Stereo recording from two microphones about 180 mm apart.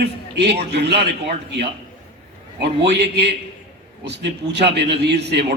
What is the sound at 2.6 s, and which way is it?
A man's voice, 70° right (ahead or behind).